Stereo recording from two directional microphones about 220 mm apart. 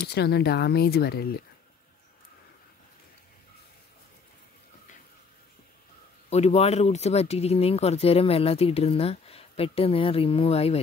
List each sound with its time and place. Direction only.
0.0 s speech: 45° left (ahead or behind)
6.3 s speech: 30° left (ahead or behind)